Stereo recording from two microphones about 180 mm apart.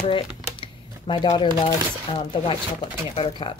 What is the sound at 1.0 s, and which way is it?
Speech, 25° left (ahead or behind).